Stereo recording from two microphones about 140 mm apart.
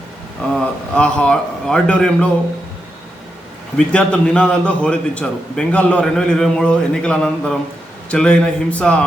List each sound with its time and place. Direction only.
0.5 s a man's voice: 5° left (ahead or behind)
3.8 s a man's voice: 5° left (ahead or behind)